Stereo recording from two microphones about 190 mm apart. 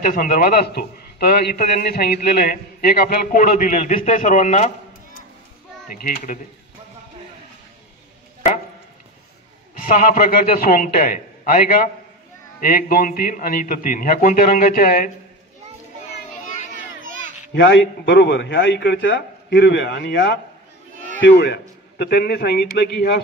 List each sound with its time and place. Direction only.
0.1 s a man's voice: 45° left (ahead or behind)
5.9 s a man's voice: 50° left (ahead or behind)
9.8 s a man's voice: 50° left (ahead or behind)
17.6 s a man's voice: 70° left (ahead or behind)